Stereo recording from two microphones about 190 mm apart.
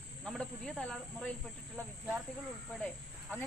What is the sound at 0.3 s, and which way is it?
Speech, 5° left (ahead or behind).